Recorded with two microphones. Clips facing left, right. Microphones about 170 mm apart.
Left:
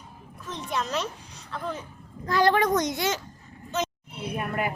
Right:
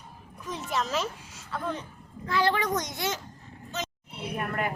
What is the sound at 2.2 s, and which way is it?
Speech, 45° left (ahead or behind).